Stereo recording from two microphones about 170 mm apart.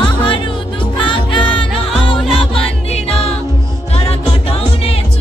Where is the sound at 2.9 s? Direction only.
35° left (ahead or behind).